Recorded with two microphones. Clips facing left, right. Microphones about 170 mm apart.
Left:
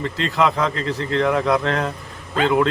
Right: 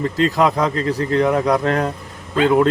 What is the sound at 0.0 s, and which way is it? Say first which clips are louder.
A man's voice: right 4 dB; 40° right (ahead or behind).